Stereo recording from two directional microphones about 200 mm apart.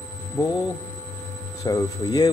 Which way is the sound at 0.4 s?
15° left (ahead or behind).